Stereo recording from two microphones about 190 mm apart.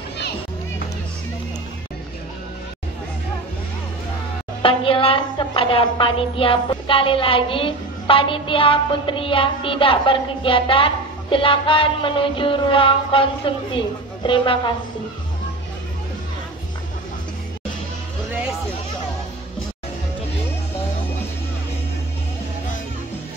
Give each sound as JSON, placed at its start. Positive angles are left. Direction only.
{"t": 4.6, "sound": "a woman's voice", "side_deg": 25}